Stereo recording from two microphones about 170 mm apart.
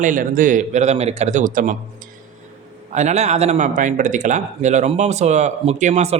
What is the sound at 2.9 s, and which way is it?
A man's voice, 45° right (ahead or behind).